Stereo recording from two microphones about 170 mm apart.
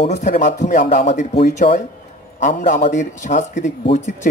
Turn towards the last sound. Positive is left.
turn(degrees=45)  # may be behind; listen again after turning